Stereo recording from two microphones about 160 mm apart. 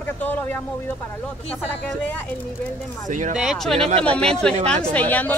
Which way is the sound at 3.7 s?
40° right (ahead or behind).